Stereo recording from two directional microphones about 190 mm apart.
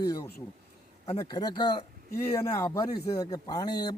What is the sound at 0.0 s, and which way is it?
Speech, 20° left (ahead or behind).